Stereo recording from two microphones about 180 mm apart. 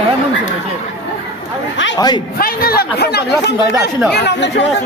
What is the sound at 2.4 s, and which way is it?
Speech, 55° left (ahead or behind).